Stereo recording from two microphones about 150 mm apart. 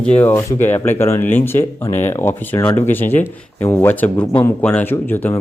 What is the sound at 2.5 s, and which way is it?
Speech, 25° left (ahead or behind).